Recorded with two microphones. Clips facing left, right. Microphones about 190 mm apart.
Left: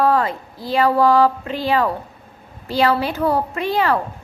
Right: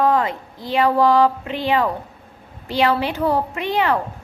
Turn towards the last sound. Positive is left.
turn(degrees=-15)  # may be behind; listen again after turning